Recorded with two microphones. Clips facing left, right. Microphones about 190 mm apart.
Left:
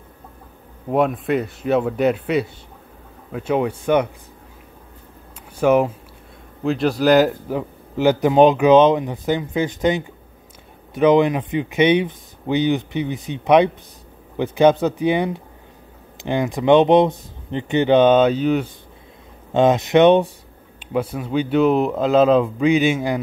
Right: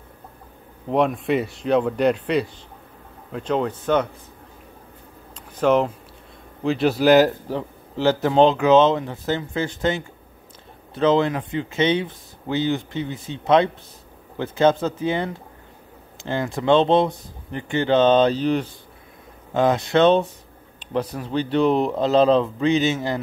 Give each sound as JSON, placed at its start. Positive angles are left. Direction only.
{"t": 0.8, "sound": "speech", "side_deg": 0}
{"t": 5.6, "sound": "speech", "side_deg": 10}
{"t": 6.6, "sound": "speech", "side_deg": 0}
{"t": 7.4, "sound": "speech", "side_deg": 15}
{"t": 19.5, "sound": "speech", "side_deg": 20}